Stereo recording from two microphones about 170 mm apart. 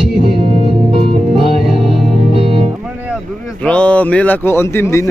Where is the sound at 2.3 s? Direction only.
35° right (ahead or behind).